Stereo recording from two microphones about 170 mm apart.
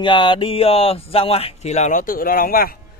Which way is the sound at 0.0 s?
30° left (ahead or behind).